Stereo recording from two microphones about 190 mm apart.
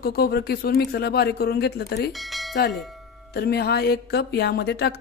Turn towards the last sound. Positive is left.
turn(degrees=60)  # may be behind; listen again after turning